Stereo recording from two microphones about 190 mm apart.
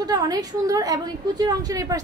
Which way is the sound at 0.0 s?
20° right (ahead or behind).